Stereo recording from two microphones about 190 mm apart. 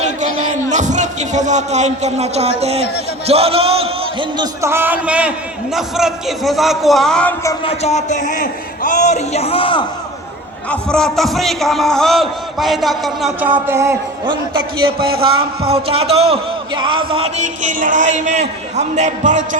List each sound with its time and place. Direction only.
0.0 s a man's voice: 40° right (ahead or behind)
4.6 s a man's voice: 10° right (ahead or behind); by 7.3 s 5° left (ahead or behind)
7.6 s a man's voice: 35° left (ahead or behind)
10.7 s a man's voice: 5° left (ahead or behind); by 13.9 s 15° right (ahead or behind)
15.2 s a man's voice: 30° right (ahead or behind)